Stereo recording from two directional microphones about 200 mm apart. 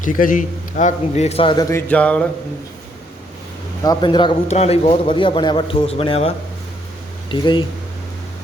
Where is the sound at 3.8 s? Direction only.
20° left (ahead or behind).